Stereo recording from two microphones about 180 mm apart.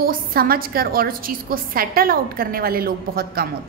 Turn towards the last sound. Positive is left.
turn(degrees=-55)  # may be behind; listen again after turning